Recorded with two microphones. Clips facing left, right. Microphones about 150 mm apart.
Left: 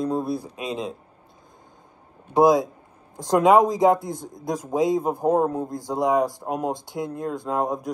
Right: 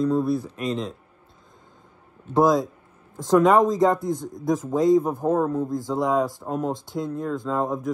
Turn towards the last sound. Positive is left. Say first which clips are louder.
# even
turn(degrees=15)  # may be behind; listen again after turning